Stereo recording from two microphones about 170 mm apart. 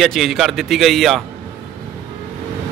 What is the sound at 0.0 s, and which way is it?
A man's voice, centre (ahead or behind).